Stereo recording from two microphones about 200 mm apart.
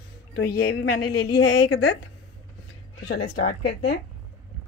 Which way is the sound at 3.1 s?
50° left (ahead or behind).